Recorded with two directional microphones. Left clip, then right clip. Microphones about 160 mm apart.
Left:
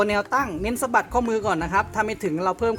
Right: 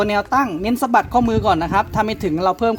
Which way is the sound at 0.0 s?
35° right (ahead or behind).